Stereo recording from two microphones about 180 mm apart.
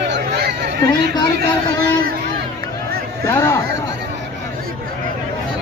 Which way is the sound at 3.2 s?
15° left (ahead or behind).